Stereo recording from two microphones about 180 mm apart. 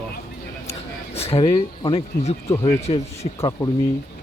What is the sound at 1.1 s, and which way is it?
Speech, 35° left (ahead or behind).